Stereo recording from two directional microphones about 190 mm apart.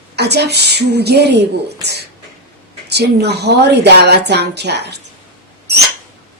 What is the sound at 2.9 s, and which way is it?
Speech, 60° right (ahead or behind).